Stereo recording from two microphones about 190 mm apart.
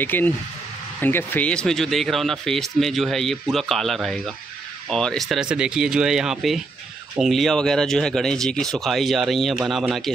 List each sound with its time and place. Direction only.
0.0 s speech: 10° left (ahead or behind)